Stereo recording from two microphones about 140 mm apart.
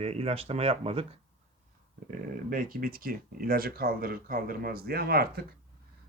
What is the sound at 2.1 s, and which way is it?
Speech, 80° right.